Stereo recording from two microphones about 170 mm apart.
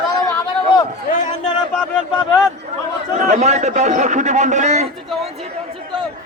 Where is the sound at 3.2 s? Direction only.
45° right (ahead or behind).